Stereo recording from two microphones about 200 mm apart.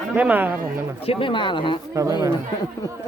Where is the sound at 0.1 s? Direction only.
10° right (ahead or behind).